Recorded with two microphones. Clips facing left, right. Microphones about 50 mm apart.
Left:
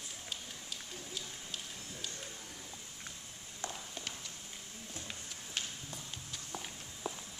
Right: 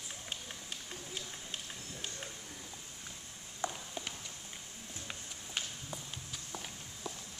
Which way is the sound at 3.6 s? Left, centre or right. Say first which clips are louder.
Right 4 dB; centre.